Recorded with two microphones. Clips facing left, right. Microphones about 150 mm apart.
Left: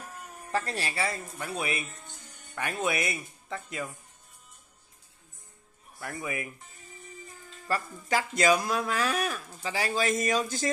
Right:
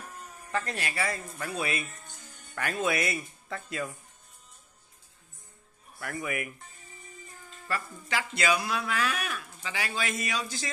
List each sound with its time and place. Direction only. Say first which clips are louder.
0.5 s speech: left 1 dB; 35° left (ahead or behind); by 3.8 s 20° left (ahead or behind)
5.9 s speech: right 1 dB; 25° left (ahead or behind)
7.6 s speech: left 3 dB; 40° left (ahead or behind)